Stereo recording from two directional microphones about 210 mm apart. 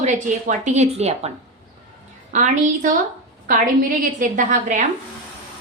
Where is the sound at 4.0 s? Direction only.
40° right (ahead or behind).